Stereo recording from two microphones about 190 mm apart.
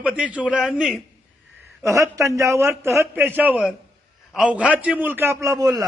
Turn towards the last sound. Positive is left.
turn(degrees=-20)  # may be behind; listen again after turning